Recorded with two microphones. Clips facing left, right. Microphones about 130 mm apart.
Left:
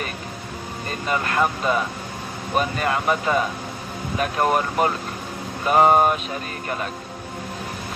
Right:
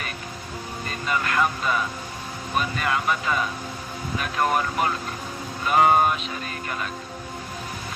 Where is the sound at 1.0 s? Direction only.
35° left (ahead or behind).